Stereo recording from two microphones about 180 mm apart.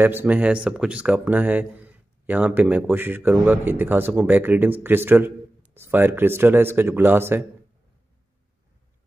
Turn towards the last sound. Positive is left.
turn(degrees=-10)  # may be behind; listen again after turning